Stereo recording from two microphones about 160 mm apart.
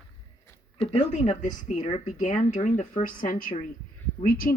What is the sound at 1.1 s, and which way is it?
Speech, 45° left (ahead or behind).